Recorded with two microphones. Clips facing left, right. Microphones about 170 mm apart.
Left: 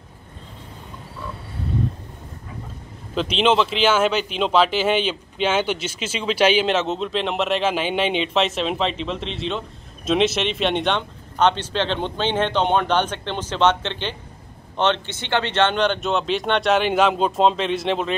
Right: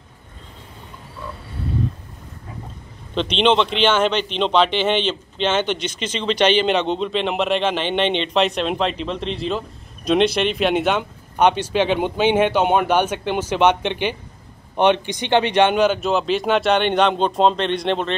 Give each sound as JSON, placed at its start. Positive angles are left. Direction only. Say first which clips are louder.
{"t": 3.2, "sound": "speech", "louder": "right 1 dB", "side_deg": 5}